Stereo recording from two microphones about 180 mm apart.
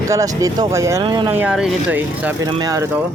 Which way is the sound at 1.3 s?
10° right (ahead or behind).